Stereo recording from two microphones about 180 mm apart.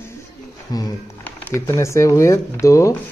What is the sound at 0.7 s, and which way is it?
Speech, 20° left (ahead or behind).